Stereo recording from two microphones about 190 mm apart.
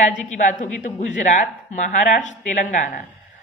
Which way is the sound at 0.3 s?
40° left (ahead or behind).